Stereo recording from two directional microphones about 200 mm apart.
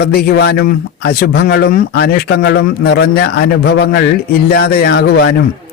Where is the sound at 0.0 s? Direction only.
50° left (ahead or behind).